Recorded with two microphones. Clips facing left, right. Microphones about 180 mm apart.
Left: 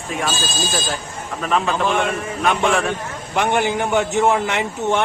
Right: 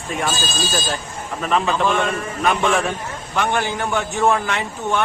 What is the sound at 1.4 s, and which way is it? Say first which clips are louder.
Speech: even; centre (ahead or behind).